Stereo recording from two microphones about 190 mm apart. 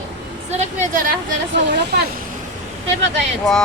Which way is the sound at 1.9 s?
55° right (ahead or behind).